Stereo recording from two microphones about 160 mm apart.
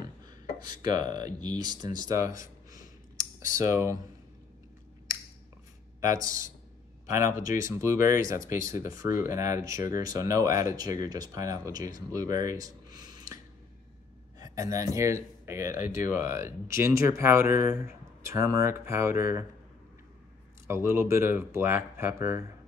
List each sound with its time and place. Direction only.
0.7 s speech: 25° right (ahead or behind)
7.3 s speech: 20° right (ahead or behind)
14.4 s a man's voice: 20° right (ahead or behind)
20.6 s speech: 15° right (ahead or behind)